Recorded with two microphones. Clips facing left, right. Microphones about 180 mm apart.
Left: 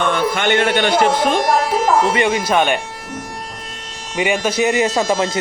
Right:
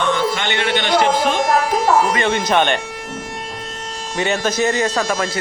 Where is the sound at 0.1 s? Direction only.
50° left (ahead or behind).